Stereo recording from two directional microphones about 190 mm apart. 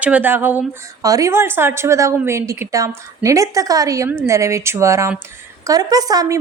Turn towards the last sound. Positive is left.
turn(degrees=-20)  # may be behind; listen again after turning